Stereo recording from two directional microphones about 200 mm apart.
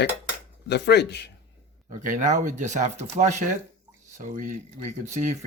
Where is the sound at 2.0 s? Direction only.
40° right (ahead or behind).